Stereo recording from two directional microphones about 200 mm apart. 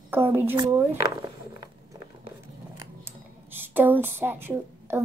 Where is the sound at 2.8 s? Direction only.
10° right (ahead or behind).